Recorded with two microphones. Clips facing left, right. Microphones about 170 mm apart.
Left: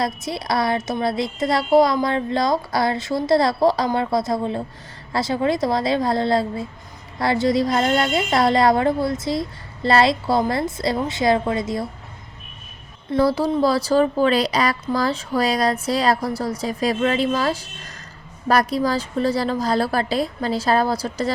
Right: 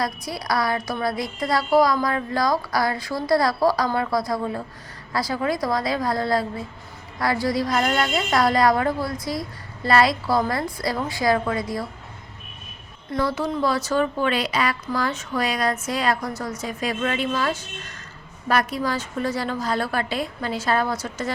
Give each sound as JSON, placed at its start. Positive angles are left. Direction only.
{"t": 0.0, "sound": "a woman's voice", "side_deg": 25}
{"t": 13.1, "sound": "speech", "side_deg": 35}